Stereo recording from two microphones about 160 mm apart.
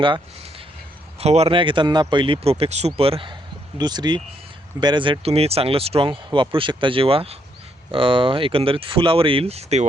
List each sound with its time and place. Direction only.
1.2 s speech: 40° right (ahead or behind)